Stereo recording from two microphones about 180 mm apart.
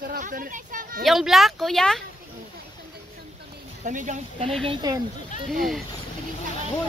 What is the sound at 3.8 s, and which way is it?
Speech, 45° right (ahead or behind).